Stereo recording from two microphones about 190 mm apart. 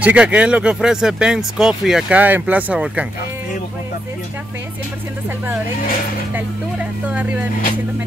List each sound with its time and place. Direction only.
0.0 s speech: 5° right (ahead or behind)
6.3 s speech: 5° right (ahead or behind)